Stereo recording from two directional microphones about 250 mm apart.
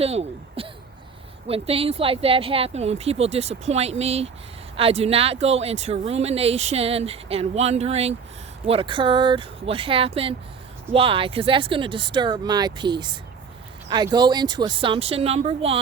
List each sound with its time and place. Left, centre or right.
0.0 s speech: right